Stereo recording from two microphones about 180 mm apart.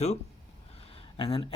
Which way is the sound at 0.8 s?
30° left (ahead or behind).